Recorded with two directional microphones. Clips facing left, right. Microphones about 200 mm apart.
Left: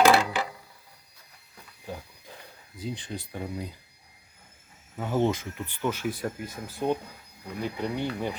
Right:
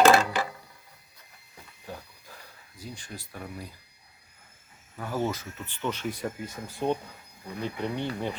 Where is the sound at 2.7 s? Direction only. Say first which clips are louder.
Left 7 dB; 20° left (ahead or behind).